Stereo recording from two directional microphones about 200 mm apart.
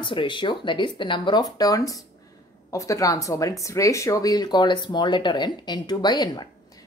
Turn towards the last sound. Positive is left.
turn(degrees=20)  # may be behind; listen again after turning